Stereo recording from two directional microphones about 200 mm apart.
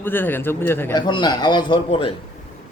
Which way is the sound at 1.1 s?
20° left (ahead or behind).